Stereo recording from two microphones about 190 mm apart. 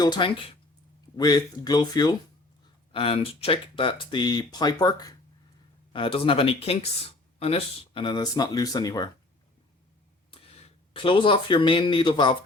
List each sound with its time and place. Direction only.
0.0 s speech: 25° left (ahead or behind)
10.3 s speech: 30° left (ahead or behind)